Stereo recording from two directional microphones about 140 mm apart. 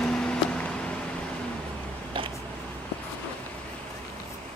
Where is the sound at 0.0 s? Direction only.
5° left (ahead or behind).